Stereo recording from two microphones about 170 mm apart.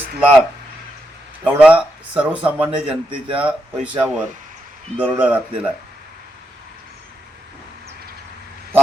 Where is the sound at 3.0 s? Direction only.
30° right (ahead or behind).